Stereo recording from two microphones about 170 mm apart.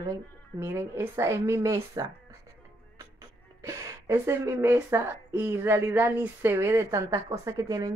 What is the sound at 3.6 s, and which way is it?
Speech, 15° right (ahead or behind).